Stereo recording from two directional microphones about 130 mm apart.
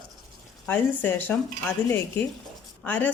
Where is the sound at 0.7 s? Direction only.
15° left (ahead or behind).